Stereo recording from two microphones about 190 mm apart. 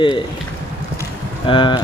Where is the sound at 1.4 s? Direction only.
25° left (ahead or behind).